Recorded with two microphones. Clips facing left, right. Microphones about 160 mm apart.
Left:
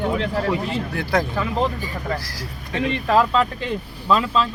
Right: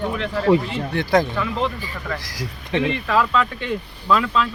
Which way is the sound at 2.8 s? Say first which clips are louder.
Left 1 dB; 40° left (ahead or behind).